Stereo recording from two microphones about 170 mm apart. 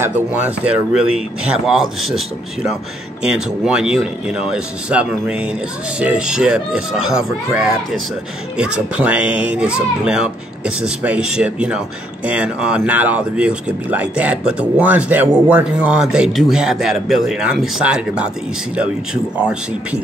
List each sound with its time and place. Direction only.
0.7 s speech: 5° right (ahead or behind)